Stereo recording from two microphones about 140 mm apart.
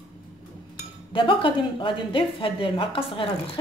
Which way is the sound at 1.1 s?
35° left (ahead or behind).